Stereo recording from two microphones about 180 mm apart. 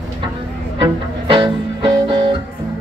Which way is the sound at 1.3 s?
25° right (ahead or behind).